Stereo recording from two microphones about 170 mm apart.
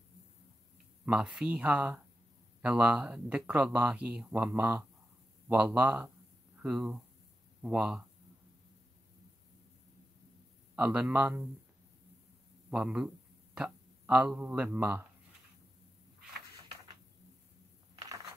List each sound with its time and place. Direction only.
1.0 s speech: 5° right (ahead or behind)
10.8 s speech: 5° right (ahead or behind)
12.7 s speech: 5° right (ahead or behind)
17.9 s a sound: 20° right (ahead or behind)